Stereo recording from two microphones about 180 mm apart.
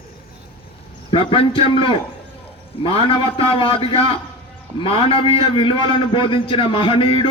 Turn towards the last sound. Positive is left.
turn(degrees=30)  # may be behind; listen again after turning